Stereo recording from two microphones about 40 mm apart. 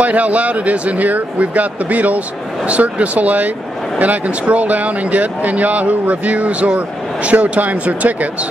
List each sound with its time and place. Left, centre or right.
0.0 s speech: right